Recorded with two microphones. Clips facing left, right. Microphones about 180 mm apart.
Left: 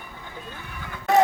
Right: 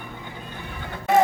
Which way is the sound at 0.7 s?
30° right (ahead or behind).